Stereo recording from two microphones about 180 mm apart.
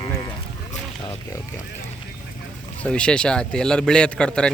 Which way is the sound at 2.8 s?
5° left (ahead or behind).